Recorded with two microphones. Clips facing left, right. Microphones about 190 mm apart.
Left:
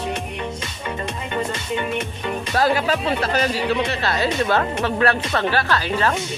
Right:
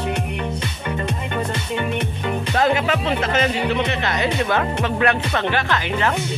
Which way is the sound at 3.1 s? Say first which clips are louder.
Right 1 dB; 20° right (ahead or behind).